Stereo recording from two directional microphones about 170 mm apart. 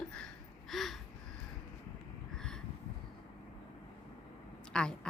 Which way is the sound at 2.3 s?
5° left (ahead or behind).